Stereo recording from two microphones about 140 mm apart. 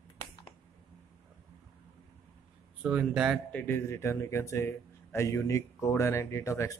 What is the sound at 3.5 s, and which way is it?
Speech, 15° left (ahead or behind).